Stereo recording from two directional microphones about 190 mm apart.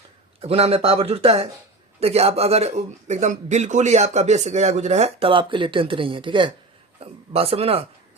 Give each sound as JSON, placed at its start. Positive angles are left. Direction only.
{"t": 0.4, "sound": "speech", "side_deg": -30}